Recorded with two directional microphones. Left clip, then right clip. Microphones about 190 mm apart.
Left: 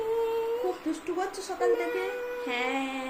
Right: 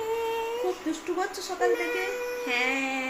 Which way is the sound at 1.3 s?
Centre (ahead or behind).